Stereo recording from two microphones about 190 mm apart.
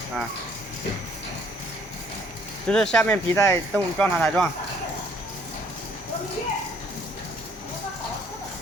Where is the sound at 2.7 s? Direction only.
5° left (ahead or behind).